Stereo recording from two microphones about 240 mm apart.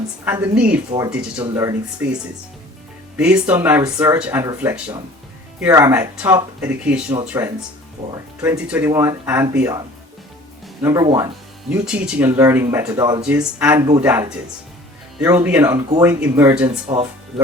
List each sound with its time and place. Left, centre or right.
0.3 s a woman's voice: centre
3.2 s speech: centre
10.8 s speech: centre
11.7 s speech: centre
13.2 s speech: centre
16.6 s speech: right